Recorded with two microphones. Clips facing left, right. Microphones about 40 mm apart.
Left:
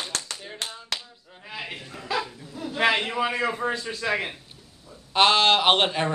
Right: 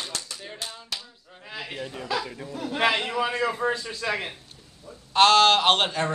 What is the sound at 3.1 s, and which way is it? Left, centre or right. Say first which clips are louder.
A man's voice: even; centre.